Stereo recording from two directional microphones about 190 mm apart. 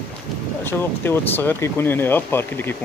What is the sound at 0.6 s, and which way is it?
Speech, 10° left (ahead or behind).